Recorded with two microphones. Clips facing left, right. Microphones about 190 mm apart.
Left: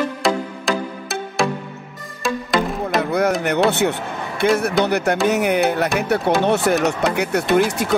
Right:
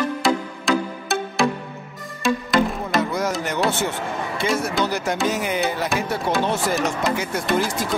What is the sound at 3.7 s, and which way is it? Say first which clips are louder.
Speech: left 4 dB; 65° left (ahead or behind).